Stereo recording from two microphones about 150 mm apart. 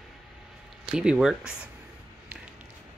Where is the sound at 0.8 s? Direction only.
5° right (ahead or behind).